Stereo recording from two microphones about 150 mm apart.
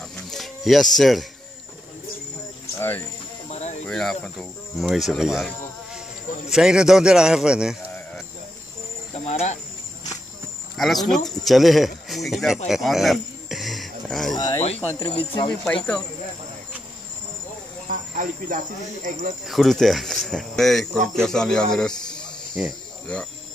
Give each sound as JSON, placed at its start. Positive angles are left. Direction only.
{"t": 0.1, "sound": "a sound", "side_deg": 0}
{"t": 3.4, "sound": "a sound", "side_deg": 50}
{"t": 3.8, "sound": "speech", "side_deg": 5}
{"t": 6.5, "sound": "speech", "side_deg": -5}
{"t": 9.1, "sound": "cricket", "side_deg": 45}
{"t": 10.8, "sound": "speech", "side_deg": 0}
{"t": 14.3, "sound": "speech", "side_deg": 25}
{"t": 15.0, "sound": "speech", "side_deg": 35}
{"t": 15.6, "sound": "speech", "side_deg": 10}
{"t": 17.8, "sound": "speech", "side_deg": -60}
{"t": 19.4, "sound": "speech", "side_deg": 0}